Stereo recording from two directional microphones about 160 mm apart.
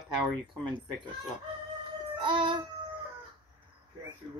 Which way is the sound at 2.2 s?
30° right (ahead or behind).